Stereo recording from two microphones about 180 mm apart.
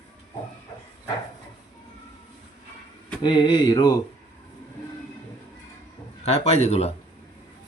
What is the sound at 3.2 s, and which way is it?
Mantra, 25° left (ahead or behind).